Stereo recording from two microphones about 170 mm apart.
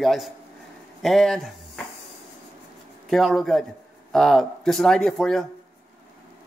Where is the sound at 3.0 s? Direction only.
Centre (ahead or behind).